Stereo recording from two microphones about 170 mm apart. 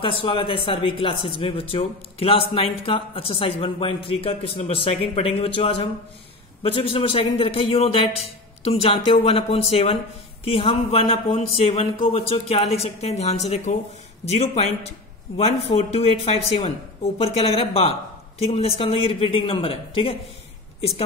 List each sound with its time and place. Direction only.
0.0 s speech: 30° left (ahead or behind)